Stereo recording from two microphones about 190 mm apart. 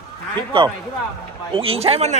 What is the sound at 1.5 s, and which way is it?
Speech, 30° right (ahead or behind).